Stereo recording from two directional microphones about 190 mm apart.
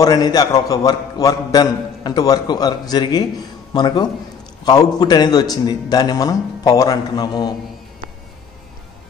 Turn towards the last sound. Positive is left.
turn(degrees=20)  # may be behind; listen again after turning